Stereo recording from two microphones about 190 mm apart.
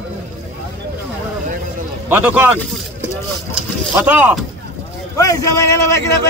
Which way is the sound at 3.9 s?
10° right (ahead or behind).